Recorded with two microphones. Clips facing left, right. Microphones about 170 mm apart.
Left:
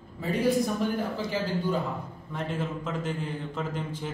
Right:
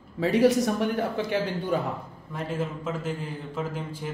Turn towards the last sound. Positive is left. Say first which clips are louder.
# right 1 dB
turn(degrees=-5)  # may be behind; listen again after turning